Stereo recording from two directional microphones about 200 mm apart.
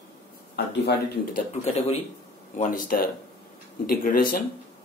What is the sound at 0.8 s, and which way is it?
Speech, 50° left (ahead or behind).